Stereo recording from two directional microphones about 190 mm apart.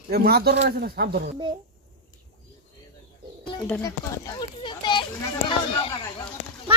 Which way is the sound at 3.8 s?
15° left (ahead or behind).